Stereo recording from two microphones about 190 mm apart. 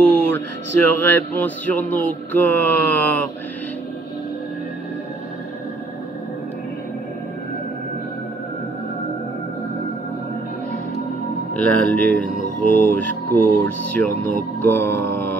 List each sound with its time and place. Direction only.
0.3 s speech: 10° left (ahead or behind)
11.5 s speech: 5° left (ahead or behind)
12.4 s mantra: 45° left (ahead or behind)
12.8 s speech: 10° left (ahead or behind)